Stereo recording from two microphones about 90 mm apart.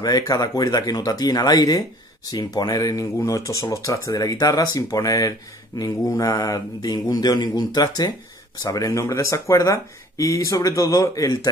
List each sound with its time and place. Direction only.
0.0 s speech: 40° left (ahead or behind)